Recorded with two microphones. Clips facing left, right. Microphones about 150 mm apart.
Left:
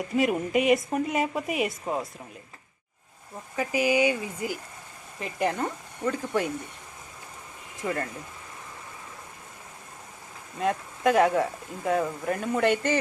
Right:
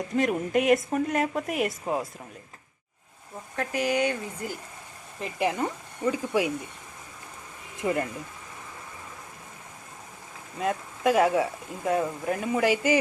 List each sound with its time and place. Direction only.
0.2 s speech: 5° left (ahead or behind)
3.5 s speech: 5° left (ahead or behind)
7.8 s speech: 15° right (ahead or behind)
10.6 s speech: centre (ahead or behind)